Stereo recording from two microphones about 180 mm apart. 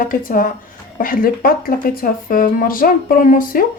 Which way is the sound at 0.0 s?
50° left (ahead or behind).